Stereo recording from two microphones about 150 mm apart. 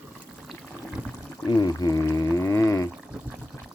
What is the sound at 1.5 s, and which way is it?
Speech, 25° left (ahead or behind).